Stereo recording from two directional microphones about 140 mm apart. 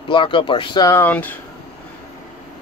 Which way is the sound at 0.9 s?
15° left (ahead or behind).